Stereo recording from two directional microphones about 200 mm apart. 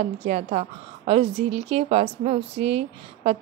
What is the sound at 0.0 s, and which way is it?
A woman's voice, 35° right (ahead or behind).